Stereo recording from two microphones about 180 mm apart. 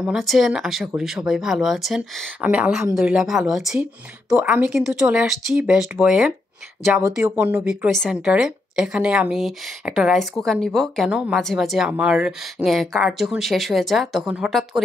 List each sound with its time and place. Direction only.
0.0 s a woman's voice: centre (ahead or behind)
6.8 s a woman's voice: 15° right (ahead or behind)